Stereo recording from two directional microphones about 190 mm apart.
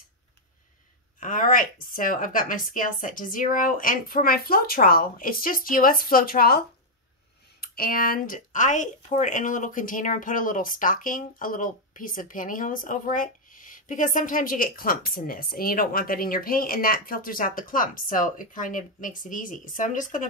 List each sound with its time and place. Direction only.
1.2 s speech: 45° left (ahead or behind)
7.6 s speech: 50° left (ahead or behind)